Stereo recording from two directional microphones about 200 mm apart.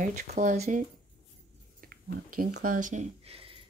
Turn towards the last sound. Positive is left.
turn(degrees=-30)  # may be behind; listen again after turning